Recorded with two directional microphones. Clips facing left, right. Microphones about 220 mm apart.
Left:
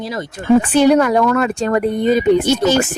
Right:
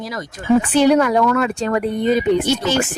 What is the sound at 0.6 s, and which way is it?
Speech, 45° left (ahead or behind).